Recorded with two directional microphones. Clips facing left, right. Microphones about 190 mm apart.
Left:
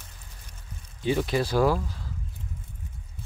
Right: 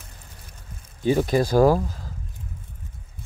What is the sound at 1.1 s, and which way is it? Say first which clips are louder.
Speech: right 5 dB; 45° right (ahead or behind).